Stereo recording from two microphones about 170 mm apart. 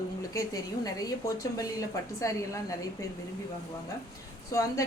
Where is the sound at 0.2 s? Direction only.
20° left (ahead or behind).